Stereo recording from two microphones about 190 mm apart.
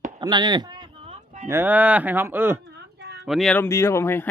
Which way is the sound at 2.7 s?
60° right (ahead or behind).